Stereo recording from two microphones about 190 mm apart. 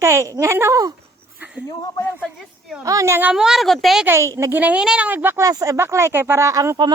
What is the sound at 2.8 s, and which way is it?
A woman's voice, 15° right (ahead or behind).